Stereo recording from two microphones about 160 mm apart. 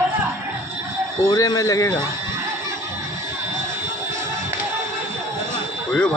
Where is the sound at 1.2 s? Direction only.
25° left (ahead or behind).